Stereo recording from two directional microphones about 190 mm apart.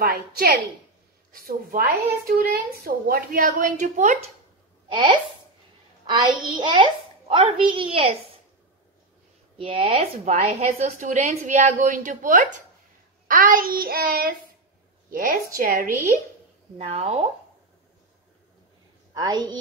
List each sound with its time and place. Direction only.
0.0 s a woman's voice: 55° right (ahead or behind)
4.8 s speech: 25° right (ahead or behind)
6.6 s a child's voice: 25° right (ahead or behind)
9.6 s a woman's voice: 30° right (ahead or behind)
16.7 s a woman's voice: 35° right (ahead or behind)
19.1 s a child's voice: 20° right (ahead or behind)